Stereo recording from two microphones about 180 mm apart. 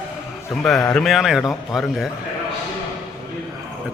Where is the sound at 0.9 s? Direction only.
Centre (ahead or behind).